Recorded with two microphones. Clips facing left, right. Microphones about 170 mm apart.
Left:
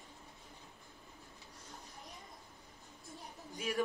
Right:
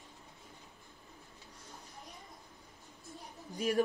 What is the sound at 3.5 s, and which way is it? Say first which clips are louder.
Speech: right 6 dB; 40° right (ahead or behind).